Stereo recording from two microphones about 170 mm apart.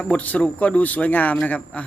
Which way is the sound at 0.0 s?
10° left (ahead or behind).